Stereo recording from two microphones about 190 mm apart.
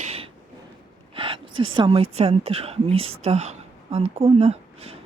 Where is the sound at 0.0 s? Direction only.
35° right (ahead or behind).